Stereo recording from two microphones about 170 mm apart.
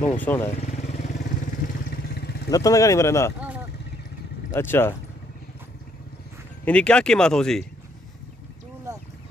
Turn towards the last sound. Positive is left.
turn(degrees=5)  # may be behind; listen again after turning